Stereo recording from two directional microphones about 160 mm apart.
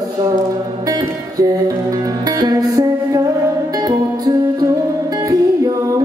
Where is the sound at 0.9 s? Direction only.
20° right (ahead or behind).